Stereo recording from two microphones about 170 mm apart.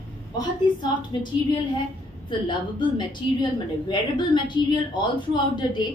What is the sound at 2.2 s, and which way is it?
A woman's voice, 30° left (ahead or behind).